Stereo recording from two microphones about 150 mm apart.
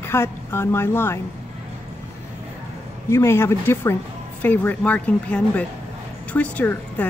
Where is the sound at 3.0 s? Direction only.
15° left (ahead or behind).